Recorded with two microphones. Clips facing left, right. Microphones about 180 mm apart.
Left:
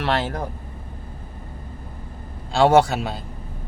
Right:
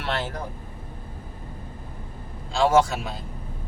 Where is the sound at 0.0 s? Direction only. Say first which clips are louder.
Left 5 dB; 65° left (ahead or behind).